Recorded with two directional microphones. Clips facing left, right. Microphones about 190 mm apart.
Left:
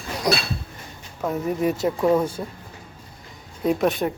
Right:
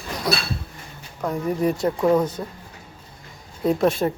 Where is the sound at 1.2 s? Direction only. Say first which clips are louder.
Even; 5° left (ahead or behind).